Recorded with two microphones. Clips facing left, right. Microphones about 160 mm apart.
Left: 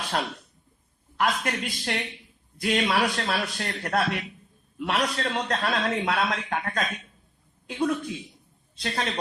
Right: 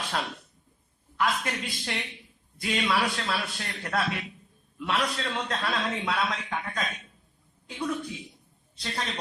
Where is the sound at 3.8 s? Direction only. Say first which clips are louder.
Left 3 dB; 55° left (ahead or behind).